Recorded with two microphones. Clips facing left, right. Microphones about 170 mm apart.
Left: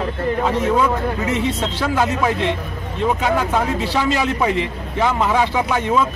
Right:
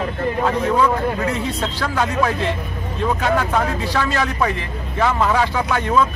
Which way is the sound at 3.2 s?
15° left (ahead or behind).